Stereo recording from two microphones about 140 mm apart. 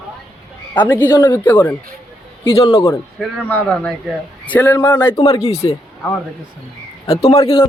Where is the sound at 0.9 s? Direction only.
15° left (ahead or behind).